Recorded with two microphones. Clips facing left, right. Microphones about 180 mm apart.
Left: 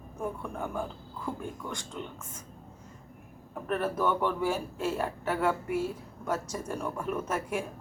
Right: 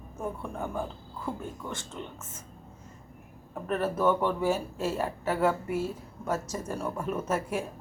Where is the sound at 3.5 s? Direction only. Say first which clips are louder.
Right 1 dB; 5° right (ahead or behind).